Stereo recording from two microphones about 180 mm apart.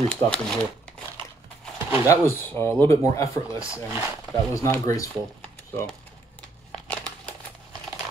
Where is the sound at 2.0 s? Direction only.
15° left (ahead or behind).